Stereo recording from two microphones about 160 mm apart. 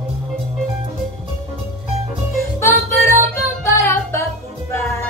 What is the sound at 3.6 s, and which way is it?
Music, 15° left (ahead or behind).